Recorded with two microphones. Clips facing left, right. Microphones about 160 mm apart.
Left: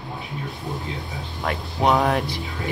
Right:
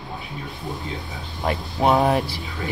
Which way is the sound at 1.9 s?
30° right (ahead or behind).